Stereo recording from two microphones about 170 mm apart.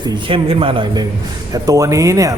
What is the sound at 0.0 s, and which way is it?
A man's voice, 30° right (ahead or behind).